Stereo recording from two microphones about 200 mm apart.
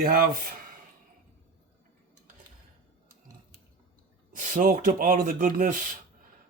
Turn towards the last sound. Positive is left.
turn(degrees=-45)  # may be behind; listen again after turning